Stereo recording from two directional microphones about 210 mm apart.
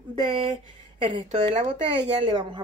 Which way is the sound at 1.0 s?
25° right (ahead or behind).